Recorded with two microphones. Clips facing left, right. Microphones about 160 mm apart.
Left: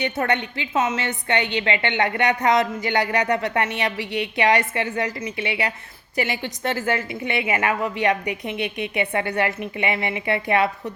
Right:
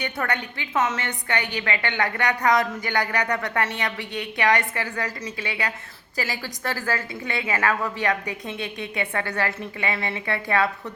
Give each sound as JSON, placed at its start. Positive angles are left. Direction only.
{"t": 0.0, "sound": "a woman's voice", "side_deg": 25}